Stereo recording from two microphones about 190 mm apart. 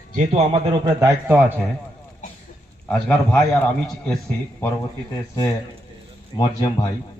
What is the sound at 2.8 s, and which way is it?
Speech, 5° left (ahead or behind).